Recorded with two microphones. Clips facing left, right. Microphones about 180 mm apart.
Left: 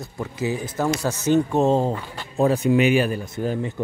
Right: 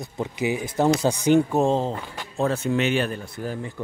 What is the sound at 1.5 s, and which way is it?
Speech, 5° left (ahead or behind).